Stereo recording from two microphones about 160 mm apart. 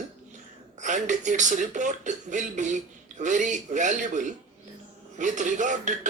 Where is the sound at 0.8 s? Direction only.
50° right (ahead or behind).